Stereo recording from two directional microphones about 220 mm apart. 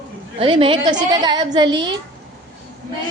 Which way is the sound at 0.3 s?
25° right (ahead or behind).